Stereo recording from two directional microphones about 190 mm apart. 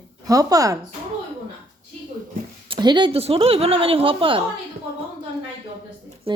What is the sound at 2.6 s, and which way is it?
A woman's voice, 25° right (ahead or behind).